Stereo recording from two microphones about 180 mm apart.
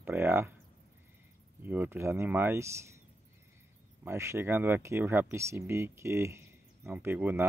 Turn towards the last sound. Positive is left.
turn(degrees=-10)  # may be behind; listen again after turning